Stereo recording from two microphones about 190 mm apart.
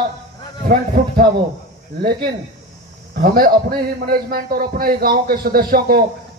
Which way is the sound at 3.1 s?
50° right (ahead or behind).